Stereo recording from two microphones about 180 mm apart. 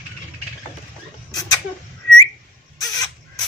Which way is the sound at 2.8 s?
20° left (ahead or behind).